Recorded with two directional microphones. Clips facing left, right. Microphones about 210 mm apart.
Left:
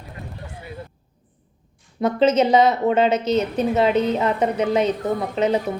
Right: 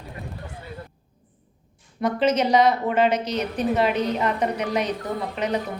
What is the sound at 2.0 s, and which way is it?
A woman's voice, 25° left (ahead or behind).